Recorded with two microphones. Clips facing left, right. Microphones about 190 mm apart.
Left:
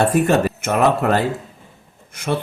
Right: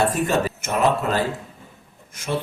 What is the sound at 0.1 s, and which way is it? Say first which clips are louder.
Speech: left 5 dB; 60° left (ahead or behind).